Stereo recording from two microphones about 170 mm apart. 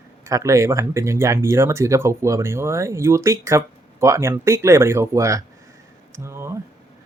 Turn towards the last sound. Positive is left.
turn(degrees=-15)  # may be behind; listen again after turning